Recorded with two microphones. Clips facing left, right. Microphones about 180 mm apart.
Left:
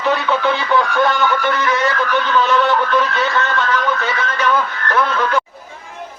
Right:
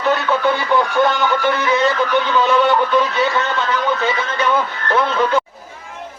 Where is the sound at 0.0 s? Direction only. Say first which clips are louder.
Even; centre (ahead or behind).